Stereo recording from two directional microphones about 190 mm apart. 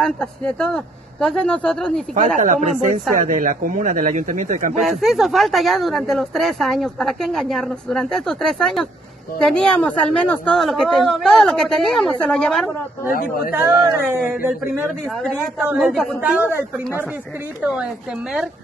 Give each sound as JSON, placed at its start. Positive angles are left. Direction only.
{"t": 0.0, "sound": "speech", "side_deg": 5}
{"t": 2.1, "sound": "speech", "side_deg": -40}
{"t": 4.7, "sound": "speech", "side_deg": 0}
{"t": 13.1, "sound": "speech", "side_deg": 50}
{"t": 15.6, "sound": "speech", "side_deg": -5}